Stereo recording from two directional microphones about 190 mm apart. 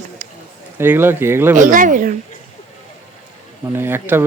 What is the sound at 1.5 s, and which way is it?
Speech, 45° right (ahead or behind).